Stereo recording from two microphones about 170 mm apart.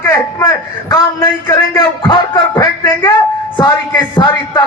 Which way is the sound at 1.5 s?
25° left (ahead or behind).